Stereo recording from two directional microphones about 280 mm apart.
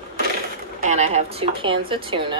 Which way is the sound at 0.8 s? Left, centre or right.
Right.